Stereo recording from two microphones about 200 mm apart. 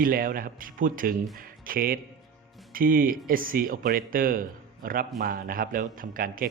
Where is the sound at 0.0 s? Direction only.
45° right (ahead or behind).